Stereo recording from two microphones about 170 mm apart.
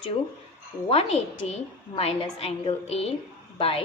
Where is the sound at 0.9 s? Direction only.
35° left (ahead or behind).